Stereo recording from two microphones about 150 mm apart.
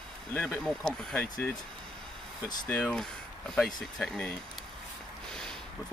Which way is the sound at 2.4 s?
5° left (ahead or behind).